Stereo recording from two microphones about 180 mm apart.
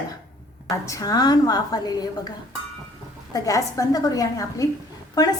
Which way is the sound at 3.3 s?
20° left (ahead or behind).